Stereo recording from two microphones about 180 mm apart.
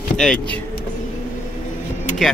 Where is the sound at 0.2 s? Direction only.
5° left (ahead or behind).